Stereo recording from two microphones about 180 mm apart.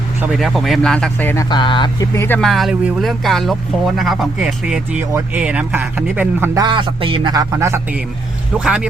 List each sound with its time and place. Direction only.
0.2 s speech: 5° right (ahead or behind)
1.5 s speech: 25° left (ahead or behind)
2.1 s speech: 10° left (ahead or behind); by 7.4 s 25° right (ahead or behind)
7.5 s a man's voice: 15° right (ahead or behind)